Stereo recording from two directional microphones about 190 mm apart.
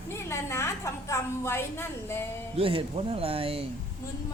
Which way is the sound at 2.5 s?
30° right (ahead or behind).